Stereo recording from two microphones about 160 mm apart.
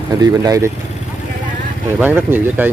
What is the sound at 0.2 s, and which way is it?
Speech, 20° right (ahead or behind).